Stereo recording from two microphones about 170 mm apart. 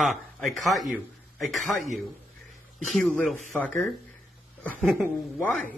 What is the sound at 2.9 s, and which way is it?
Speech, centre (ahead or behind).